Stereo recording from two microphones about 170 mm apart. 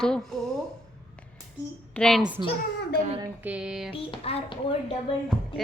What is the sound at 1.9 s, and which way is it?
Speech, 5° left (ahead or behind).